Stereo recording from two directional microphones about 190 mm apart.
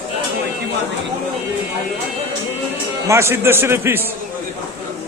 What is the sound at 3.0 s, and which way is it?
A man's voice, 15° right (ahead or behind).